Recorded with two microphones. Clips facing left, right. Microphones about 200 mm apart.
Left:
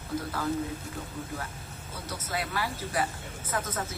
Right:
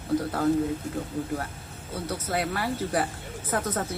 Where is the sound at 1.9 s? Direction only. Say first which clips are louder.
Right 6 dB; 55° right (ahead or behind).